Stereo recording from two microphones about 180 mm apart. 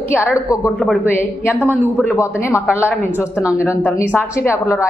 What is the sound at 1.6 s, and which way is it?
Speech, 10° right (ahead or behind).